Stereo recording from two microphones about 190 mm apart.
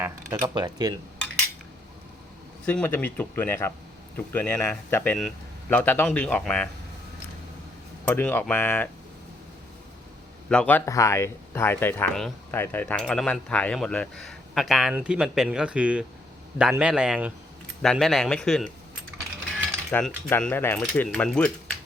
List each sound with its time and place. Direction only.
0.0 s speech: 20° right (ahead or behind)
2.6 s speech: 10° left (ahead or behind)
8.0 s speech: 10° left (ahead or behind)
10.5 s speech: 5° left (ahead or behind)
19.9 s speech: 5° left (ahead or behind)